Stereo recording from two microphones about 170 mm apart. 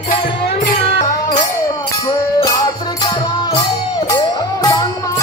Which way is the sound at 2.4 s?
20° left (ahead or behind).